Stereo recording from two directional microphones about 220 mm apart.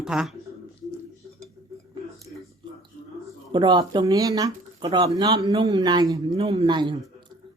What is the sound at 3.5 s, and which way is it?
Speech, 20° right (ahead or behind).